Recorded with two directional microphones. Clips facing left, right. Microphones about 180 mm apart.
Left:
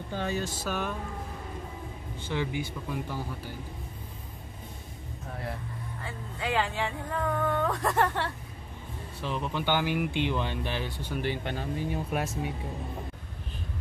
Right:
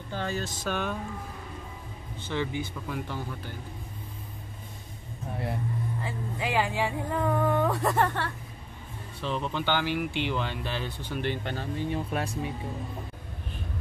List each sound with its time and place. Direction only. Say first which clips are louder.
0.1 s speech: left 1 dB; 15° left (ahead or behind)
0.7 s speech: right 3 dB; 5° left (ahead or behind)
2.2 s speech: right 1 dB; 10° left (ahead or behind)
6.4 s speech: right 2 dB; 10° right (ahead or behind)
9.2 s speech: right 1 dB; 5° left (ahead or behind)